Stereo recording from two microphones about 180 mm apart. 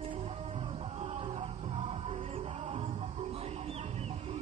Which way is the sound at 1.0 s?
35° right (ahead or behind).